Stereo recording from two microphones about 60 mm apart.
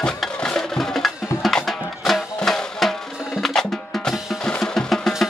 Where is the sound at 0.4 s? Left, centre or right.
Centre.